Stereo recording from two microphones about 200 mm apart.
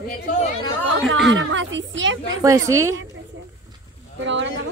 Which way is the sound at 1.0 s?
70° right (ahead or behind).